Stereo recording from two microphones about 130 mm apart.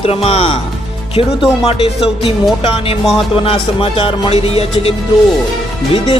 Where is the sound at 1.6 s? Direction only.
50° left (ahead or behind).